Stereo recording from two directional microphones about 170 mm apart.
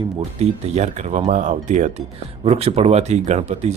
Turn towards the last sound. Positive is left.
turn(degrees=-40)  # may be behind; listen again after turning